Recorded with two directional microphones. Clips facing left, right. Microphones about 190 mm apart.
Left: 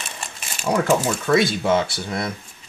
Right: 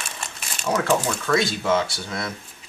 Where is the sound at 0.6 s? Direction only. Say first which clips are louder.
Left 2 dB; 10° left (ahead or behind).